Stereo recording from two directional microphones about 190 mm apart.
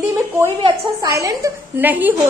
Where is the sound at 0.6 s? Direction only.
25° right (ahead or behind).